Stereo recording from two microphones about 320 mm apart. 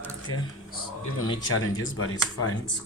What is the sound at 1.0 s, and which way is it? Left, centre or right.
Speech, left.